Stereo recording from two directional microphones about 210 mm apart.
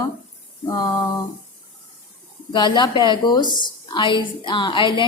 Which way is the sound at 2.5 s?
20° left (ahead or behind).